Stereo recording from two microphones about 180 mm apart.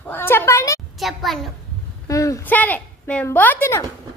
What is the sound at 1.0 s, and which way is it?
Speech, centre (ahead or behind).